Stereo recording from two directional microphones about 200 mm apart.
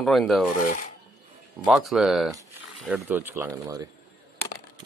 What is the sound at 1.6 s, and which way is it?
Speech, centre (ahead or behind).